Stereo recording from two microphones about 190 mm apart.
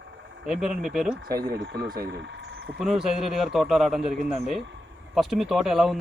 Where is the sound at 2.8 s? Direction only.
Centre (ahead or behind).